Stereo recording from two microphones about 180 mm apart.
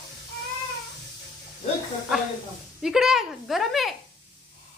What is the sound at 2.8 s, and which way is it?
Speech, 5° right (ahead or behind).